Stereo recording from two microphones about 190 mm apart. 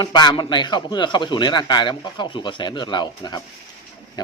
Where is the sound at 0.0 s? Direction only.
20° left (ahead or behind).